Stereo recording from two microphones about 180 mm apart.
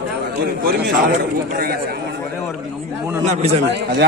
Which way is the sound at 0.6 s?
55° right (ahead or behind).